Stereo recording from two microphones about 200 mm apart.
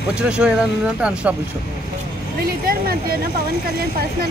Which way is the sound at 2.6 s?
50° right (ahead or behind).